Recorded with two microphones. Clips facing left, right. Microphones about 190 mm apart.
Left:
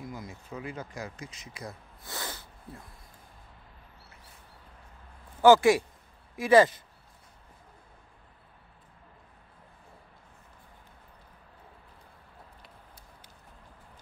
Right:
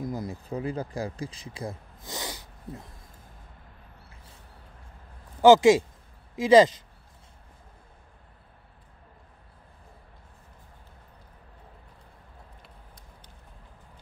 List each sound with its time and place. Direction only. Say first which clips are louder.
0.0 s speech: right 8 dB; 35° right (ahead or behind)
2.0 s snort: right 3 dB; 15° right (ahead or behind)
5.4 s speech: right 3 dB; 20° right (ahead or behind)